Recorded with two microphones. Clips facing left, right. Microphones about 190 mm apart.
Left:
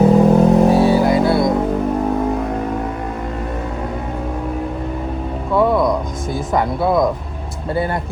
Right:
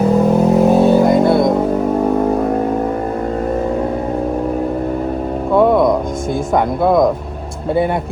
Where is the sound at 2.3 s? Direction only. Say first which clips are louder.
Right 5 dB; 35° right (ahead or behind).